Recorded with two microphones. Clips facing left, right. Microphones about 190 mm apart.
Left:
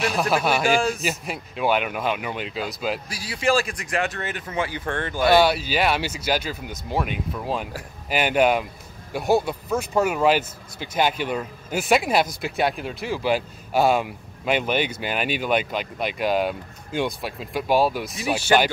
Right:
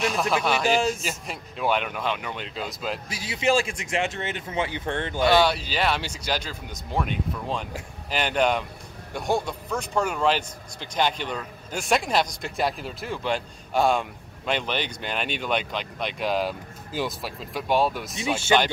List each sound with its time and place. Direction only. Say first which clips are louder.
0.0 s speech: left 2 dB; 5° left (ahead or behind)
3.1 s speech: right 1 dB; 20° right (ahead or behind)
5.2 s speech: left 3 dB; 10° left (ahead or behind)